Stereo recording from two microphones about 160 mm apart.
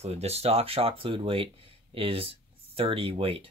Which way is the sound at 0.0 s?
40° right (ahead or behind).